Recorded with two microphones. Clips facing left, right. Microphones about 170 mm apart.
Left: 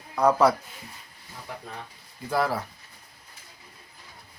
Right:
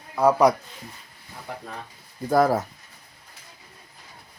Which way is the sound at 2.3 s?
45° right (ahead or behind).